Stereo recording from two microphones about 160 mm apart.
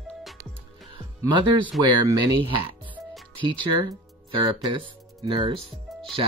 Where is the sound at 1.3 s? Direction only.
30° right (ahead or behind).